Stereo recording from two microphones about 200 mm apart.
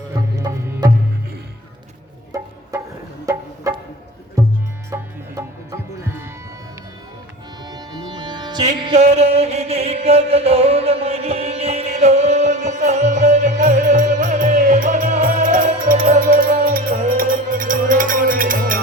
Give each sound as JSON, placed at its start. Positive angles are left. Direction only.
{"t": 0.1, "sound": "music", "side_deg": -15}
{"t": 3.3, "sound": "music", "side_deg": -15}
{"t": 4.9, "sound": "music", "side_deg": -15}
{"t": 7.6, "sound": "music", "side_deg": -20}